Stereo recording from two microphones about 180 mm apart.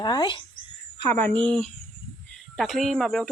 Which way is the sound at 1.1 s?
10° left (ahead or behind).